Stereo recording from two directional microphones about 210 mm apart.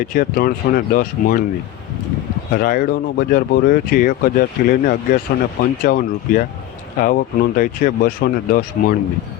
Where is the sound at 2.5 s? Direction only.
45° left (ahead or behind).